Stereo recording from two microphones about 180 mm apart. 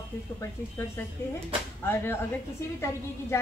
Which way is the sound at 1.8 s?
15° left (ahead or behind).